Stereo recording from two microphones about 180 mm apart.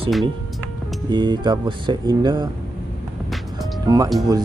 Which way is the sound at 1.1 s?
25° right (ahead or behind).